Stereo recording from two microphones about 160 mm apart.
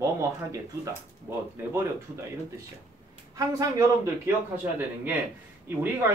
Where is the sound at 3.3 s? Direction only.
20° right (ahead or behind).